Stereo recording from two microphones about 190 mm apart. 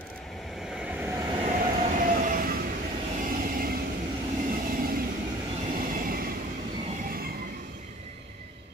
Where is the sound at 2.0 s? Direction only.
45° right (ahead or behind).